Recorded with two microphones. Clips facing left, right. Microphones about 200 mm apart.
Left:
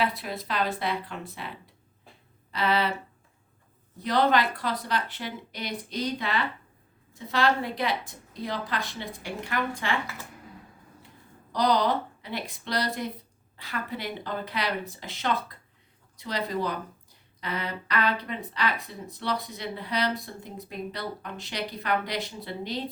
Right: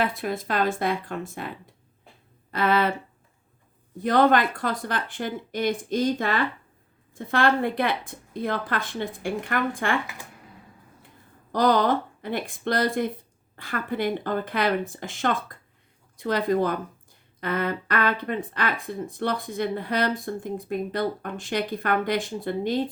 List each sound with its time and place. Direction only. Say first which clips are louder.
0.0 s speech: right 3 dB; 50° right (ahead or behind)
4.0 s speech: right 4 dB; 50° right (ahead or behind)
11.5 s speech: right 3 dB; 50° right (ahead or behind)